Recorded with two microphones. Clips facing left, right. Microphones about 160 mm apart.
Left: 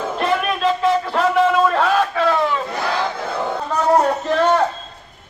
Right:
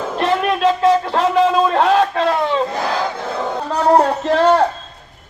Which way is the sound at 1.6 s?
25° right (ahead or behind).